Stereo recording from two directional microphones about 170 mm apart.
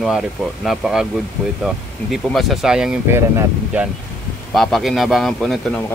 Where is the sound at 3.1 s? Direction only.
15° right (ahead or behind).